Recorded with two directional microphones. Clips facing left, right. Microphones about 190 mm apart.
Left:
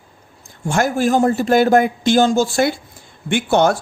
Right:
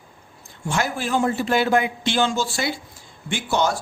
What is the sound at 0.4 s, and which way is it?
A man's voice, 45° left (ahead or behind).